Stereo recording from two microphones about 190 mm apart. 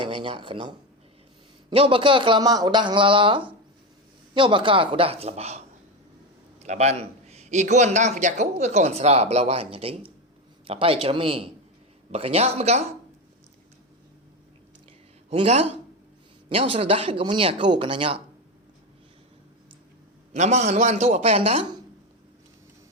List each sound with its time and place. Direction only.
0.0 s speech: 25° right (ahead or behind)
1.7 s a man's voice: 30° right (ahead or behind)
15.3 s a man's voice: 35° right (ahead or behind)
20.3 s a man's voice: 40° right (ahead or behind)